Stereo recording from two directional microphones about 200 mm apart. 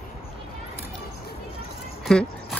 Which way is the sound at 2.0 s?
Centre (ahead or behind).